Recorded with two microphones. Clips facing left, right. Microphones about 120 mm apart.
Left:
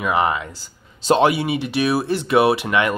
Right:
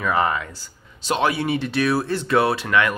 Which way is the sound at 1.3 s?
10° left (ahead or behind).